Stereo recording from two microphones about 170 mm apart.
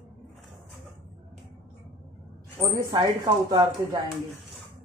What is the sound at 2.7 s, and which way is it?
Speech, 25° right (ahead or behind).